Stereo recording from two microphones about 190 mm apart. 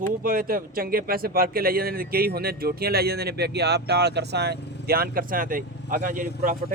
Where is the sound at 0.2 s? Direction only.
50° right (ahead or behind).